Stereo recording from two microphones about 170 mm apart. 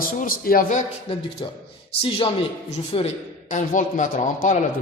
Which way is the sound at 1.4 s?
25° left (ahead or behind).